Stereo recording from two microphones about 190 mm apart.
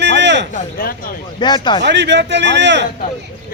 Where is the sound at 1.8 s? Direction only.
65° right (ahead or behind).